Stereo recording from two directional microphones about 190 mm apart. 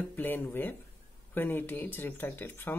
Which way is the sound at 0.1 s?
10° left (ahead or behind).